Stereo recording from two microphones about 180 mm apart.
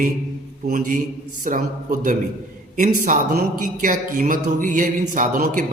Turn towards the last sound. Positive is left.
turn(degrees=-50)  # may be behind; listen again after turning